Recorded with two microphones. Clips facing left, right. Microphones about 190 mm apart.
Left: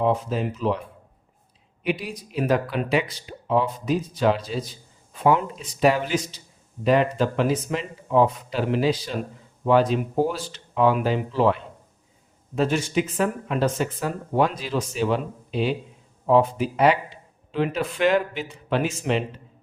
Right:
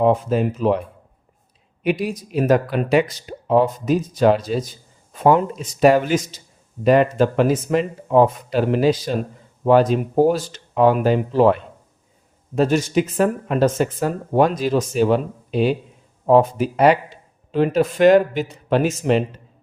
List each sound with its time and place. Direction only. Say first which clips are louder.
0.0 s speech: right 6 dB; 55° right (ahead or behind)
1.8 s speech: right 6 dB; 45° right (ahead or behind)